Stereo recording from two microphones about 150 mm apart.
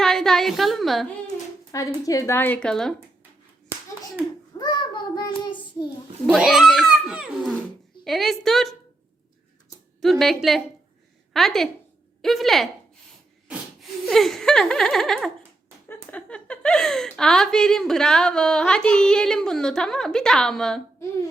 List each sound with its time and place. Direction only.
0.0 s a woman's voice: 5° left (ahead or behind)
1.7 s a woman's voice: 20° left (ahead or behind); by 2.9 s 5° left (ahead or behind)
4.5 s child singing: 30° left (ahead or behind)
6.2 s a child's voice: 5° right (ahead or behind)
10.0 s a woman's voice: centre (ahead or behind)
14.1 s a woman's voice: centre (ahead or behind)